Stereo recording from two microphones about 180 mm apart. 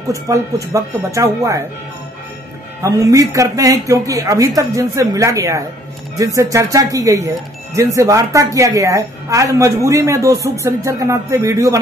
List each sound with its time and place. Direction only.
0.1 s speech: 15° right (ahead or behind)
2.8 s speech: 20° right (ahead or behind)